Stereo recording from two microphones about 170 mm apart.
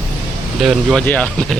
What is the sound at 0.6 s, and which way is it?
Speech, centre (ahead or behind).